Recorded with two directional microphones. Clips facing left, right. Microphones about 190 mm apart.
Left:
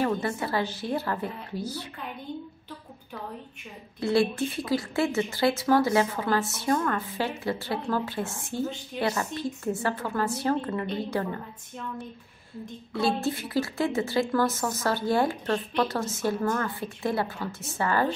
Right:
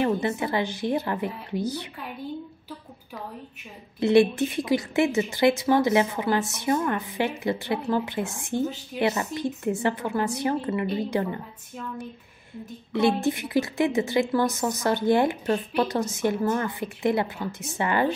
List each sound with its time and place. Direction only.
0.0 s speech: 20° right (ahead or behind)
4.0 s speech: 20° right (ahead or behind)
12.9 s speech: 20° right (ahead or behind)